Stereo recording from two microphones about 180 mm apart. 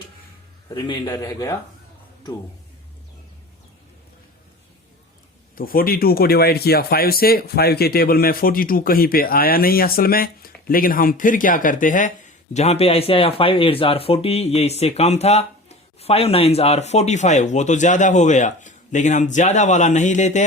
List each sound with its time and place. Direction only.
0.7 s a man's voice: 20° left (ahead or behind)
5.5 s speech: 55° left (ahead or behind)
12.5 s speech: 35° left (ahead or behind)